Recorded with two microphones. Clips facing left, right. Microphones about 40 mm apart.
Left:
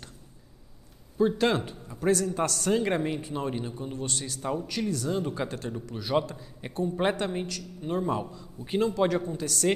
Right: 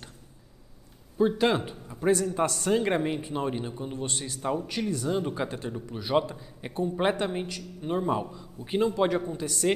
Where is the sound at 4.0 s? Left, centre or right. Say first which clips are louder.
Even; right.